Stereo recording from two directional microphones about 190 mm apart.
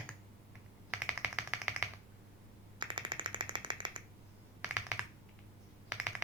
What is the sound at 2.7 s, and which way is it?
Machine gun, 25° right (ahead or behind).